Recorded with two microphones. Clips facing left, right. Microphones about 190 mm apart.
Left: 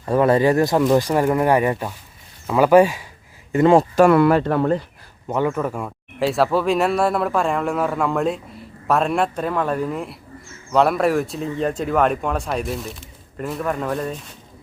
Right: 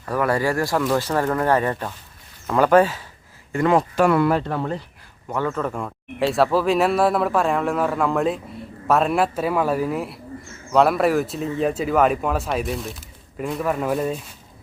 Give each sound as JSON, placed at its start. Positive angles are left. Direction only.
{"t": 0.0, "sound": "speech", "side_deg": 25}
{"t": 3.5, "sound": "speech", "side_deg": 25}
{"t": 3.9, "sound": "speech", "side_deg": 45}
{"t": 4.2, "sound": "speech", "side_deg": 65}
{"t": 5.3, "sound": "speech", "side_deg": 15}